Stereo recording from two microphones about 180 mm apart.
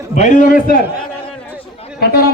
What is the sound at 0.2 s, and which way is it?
Speech, 45° left (ahead or behind).